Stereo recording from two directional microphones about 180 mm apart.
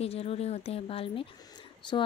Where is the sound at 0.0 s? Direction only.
35° left (ahead or behind).